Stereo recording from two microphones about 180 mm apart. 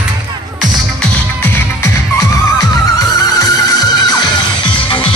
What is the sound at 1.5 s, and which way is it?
Music, 15° left (ahead or behind).